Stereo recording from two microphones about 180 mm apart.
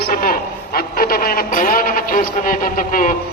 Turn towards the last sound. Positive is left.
turn(degrees=50)  # may be behind; listen again after turning